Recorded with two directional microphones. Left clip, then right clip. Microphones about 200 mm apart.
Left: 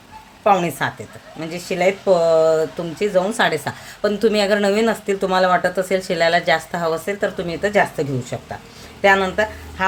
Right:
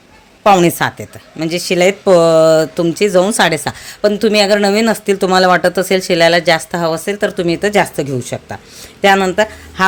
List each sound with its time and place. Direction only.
0.4 s speech: 45° right (ahead or behind)